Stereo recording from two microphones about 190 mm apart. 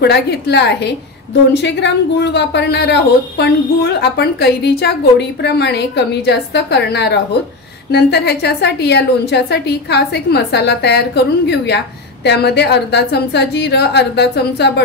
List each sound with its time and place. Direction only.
0.0 s a woman's voice: 60° left (ahead or behind)